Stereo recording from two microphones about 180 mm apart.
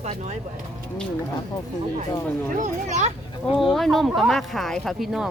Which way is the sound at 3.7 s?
Centre (ahead or behind).